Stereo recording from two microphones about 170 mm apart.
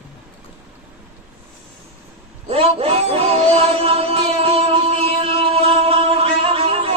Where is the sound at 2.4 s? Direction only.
35° right (ahead or behind).